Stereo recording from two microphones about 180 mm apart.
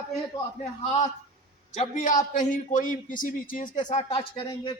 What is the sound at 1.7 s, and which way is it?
A man's voice, 40° left (ahead or behind).